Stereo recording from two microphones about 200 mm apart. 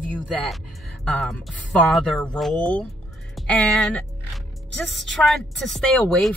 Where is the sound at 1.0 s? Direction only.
5° left (ahead or behind).